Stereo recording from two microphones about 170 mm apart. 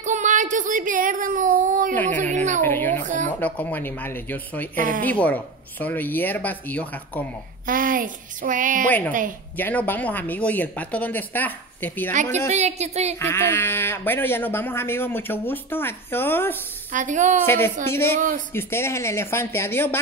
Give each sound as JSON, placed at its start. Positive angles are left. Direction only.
{"t": 0.0, "sound": "a sound", "side_deg": -45}
{"t": 2.6, "sound": "a sound", "side_deg": 10}
{"t": 3.0, "sound": "a sound", "side_deg": -45}
{"t": 3.3, "sound": "speech", "side_deg": 10}
{"t": 4.7, "sound": "a woman's voice", "side_deg": -55}
{"t": 5.2, "sound": "speech", "side_deg": 10}
{"t": 7.6, "sound": "a woman's voice", "side_deg": -55}
{"t": 8.8, "sound": "speech", "side_deg": 10}
{"t": 12.1, "sound": "a woman's voice", "side_deg": -45}
{"t": 13.2, "sound": "speech", "side_deg": 15}
{"t": 16.9, "sound": "a woman's voice", "side_deg": -45}
{"t": 17.5, "sound": "speech", "side_deg": 15}